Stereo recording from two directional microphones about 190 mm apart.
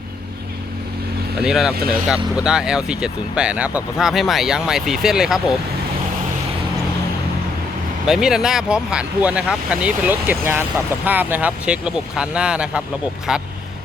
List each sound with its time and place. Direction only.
1.4 s speech: 5° right (ahead or behind)
1.7 s speech: 50° right (ahead or behind)
2.0 s speech: 5° right (ahead or behind)
8.0 s speech: 5° right (ahead or behind)